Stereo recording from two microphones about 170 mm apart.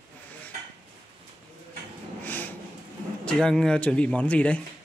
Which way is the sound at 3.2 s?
5° left (ahead or behind).